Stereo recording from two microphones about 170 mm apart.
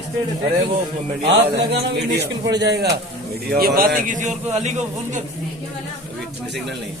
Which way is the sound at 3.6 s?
60° right (ahead or behind).